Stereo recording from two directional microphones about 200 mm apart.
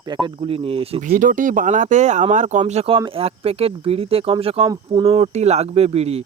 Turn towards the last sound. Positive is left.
turn(degrees=-30)  # may be behind; listen again after turning